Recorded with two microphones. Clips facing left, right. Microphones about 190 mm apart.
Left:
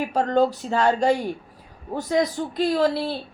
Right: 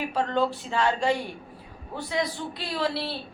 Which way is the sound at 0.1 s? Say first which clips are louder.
Left 6 dB; 40° left (ahead or behind).